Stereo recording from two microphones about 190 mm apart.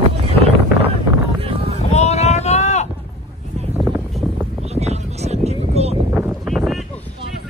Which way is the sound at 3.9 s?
5° right (ahead or behind).